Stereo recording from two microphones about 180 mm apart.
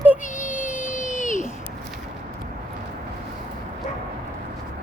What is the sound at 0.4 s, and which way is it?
Child singing, 5° right (ahead or behind).